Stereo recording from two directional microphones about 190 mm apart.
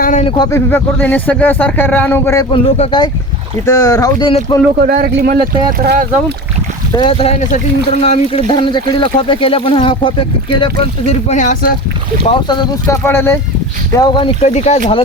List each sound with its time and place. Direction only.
0.0 s a sound: 40° left (ahead or behind)
0.5 s speech: 10° left (ahead or behind)
2.5 s speech: 30° left (ahead or behind)
3.7 s speech: 15° left (ahead or behind)
4.8 s a man's voice: 50° right (ahead or behind)
6.9 s speech: 25° left (ahead or behind)
12.3 s speech: 25° left (ahead or behind)
13.0 s speech: 10° left (ahead or behind)
14.0 s speech: 25° left (ahead or behind)